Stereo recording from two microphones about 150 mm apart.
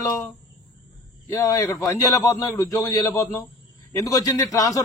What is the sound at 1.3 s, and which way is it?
A man's voice, 25° left (ahead or behind).